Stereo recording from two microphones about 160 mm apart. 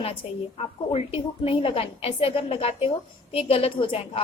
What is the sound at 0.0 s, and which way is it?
A woman's voice, 40° left (ahead or behind).